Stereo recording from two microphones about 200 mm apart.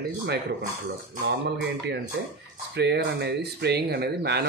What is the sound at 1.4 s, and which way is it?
Speech, 60° right (ahead or behind).